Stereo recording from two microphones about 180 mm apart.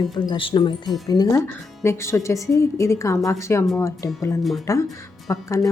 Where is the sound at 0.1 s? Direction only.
25° left (ahead or behind).